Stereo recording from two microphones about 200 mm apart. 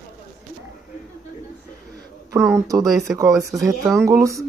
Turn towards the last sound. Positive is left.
turn(degrees=-15)  # may be behind; listen again after turning